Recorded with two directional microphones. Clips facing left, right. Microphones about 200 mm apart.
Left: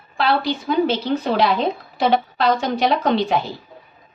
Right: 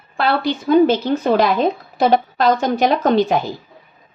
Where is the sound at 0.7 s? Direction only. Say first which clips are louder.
Right 6 dB; 50° right (ahead or behind).